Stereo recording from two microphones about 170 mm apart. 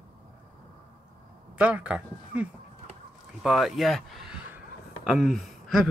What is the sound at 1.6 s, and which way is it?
Speech, 10° right (ahead or behind).